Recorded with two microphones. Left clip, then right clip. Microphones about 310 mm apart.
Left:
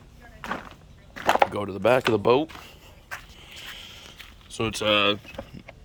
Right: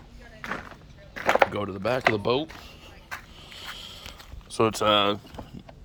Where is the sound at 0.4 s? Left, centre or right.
Centre.